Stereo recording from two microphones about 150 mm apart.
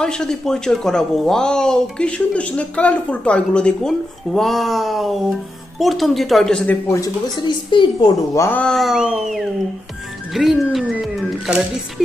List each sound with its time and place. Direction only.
0.0 s speech: 5° left (ahead or behind)
7.0 s a woman's voice: 30° left (ahead or behind)
8.4 s speech: 10° left (ahead or behind); by 11.8 s 5° right (ahead or behind)